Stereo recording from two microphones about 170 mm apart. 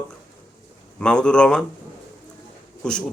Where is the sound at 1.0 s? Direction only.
5° left (ahead or behind).